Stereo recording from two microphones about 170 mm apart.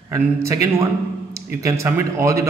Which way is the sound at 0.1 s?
15° right (ahead or behind).